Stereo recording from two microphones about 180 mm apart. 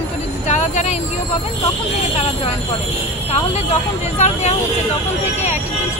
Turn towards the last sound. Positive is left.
turn(degrees=40)  # may be behind; listen again after turning